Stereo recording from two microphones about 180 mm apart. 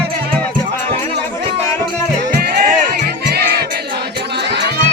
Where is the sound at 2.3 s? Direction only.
60° right (ahead or behind).